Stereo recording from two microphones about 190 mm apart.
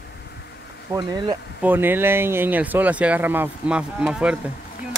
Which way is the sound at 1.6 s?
10° right (ahead or behind).